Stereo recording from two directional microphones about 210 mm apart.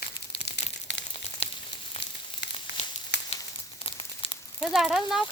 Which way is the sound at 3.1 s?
55° left (ahead or behind).